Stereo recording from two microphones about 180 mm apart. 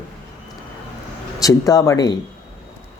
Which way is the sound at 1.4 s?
20° left (ahead or behind).